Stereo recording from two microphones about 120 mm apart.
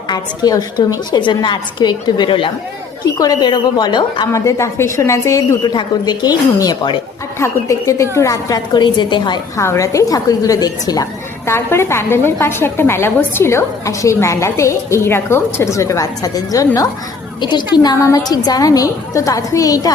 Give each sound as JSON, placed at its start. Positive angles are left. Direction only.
{"t": 0.1, "sound": "a woman's voice", "side_deg": 30}
{"t": 4.3, "sound": "a woman's voice", "side_deg": 25}
{"t": 9.6, "sound": "a woman's voice", "side_deg": 25}